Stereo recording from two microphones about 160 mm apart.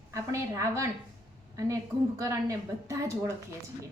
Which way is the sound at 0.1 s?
20° right (ahead or behind).